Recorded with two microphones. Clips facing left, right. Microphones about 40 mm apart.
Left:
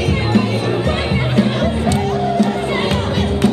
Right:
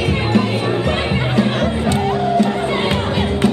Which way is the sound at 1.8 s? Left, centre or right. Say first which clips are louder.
Even; centre.